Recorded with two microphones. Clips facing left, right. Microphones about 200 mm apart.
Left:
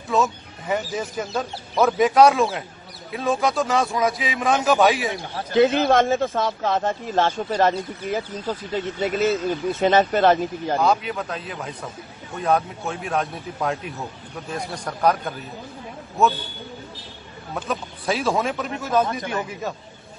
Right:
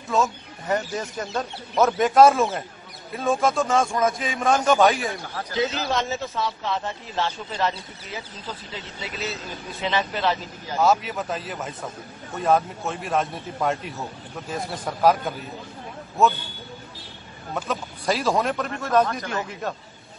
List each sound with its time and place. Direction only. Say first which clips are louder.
0.1 s a man's voice: left 2 dB; centre (ahead or behind)
5.2 s speech: left 2 dB; 25° left (ahead or behind)
5.5 s speech: left 9 dB; 55° left (ahead or behind)
10.8 s a man's voice: right 2 dB; centre (ahead or behind)
17.6 s a man's voice: left 1 dB; centre (ahead or behind)